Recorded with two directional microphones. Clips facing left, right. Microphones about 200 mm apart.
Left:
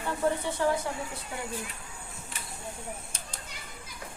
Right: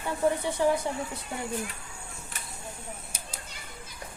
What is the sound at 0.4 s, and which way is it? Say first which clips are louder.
Speech: right 2 dB; 15° right (ahead or behind).